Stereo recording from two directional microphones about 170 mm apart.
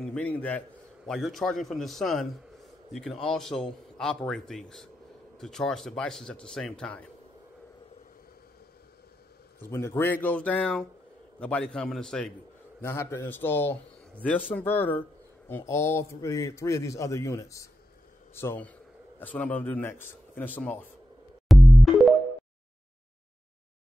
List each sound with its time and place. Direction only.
0.0 s a man's voice: 5° left (ahead or behind)
9.6 s a man's voice: 15° left (ahead or behind)
12.8 s speech: 15° left (ahead or behind)
21.5 s music: centre (ahead or behind)